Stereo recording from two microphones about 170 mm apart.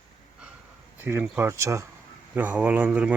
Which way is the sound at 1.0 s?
10° right (ahead or behind).